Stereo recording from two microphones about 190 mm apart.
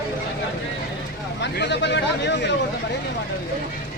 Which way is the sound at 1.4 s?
65° left (ahead or behind).